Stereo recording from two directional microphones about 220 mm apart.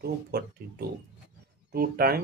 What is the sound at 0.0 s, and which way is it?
Speech, 45° right (ahead or behind).